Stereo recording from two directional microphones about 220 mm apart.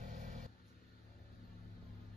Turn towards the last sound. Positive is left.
turn(degrees=-35)  # may be behind; listen again after turning